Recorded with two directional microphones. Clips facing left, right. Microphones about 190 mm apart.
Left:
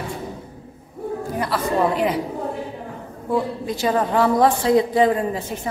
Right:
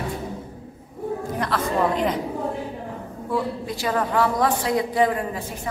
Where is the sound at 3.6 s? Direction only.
25° left (ahead or behind).